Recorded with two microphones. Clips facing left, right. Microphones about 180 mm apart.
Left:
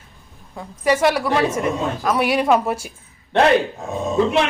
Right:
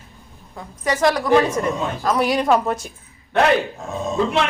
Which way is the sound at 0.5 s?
10° left (ahead or behind).